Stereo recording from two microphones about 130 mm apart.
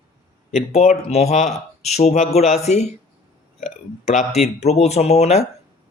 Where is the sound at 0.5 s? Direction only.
55° left (ahead or behind).